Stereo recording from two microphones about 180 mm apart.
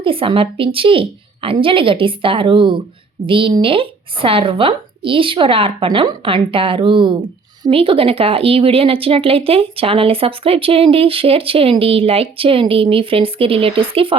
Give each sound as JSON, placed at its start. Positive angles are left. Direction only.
{"t": 0.0, "sound": "a woman's voice", "side_deg": -30}